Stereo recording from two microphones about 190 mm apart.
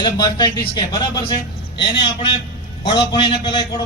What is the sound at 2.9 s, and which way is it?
Speech, 25° left (ahead or behind).